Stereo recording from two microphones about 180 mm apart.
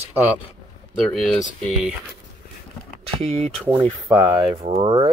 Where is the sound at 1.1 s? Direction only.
Centre (ahead or behind).